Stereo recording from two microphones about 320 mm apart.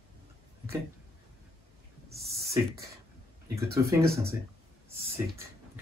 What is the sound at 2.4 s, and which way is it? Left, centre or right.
Beatboxing, right.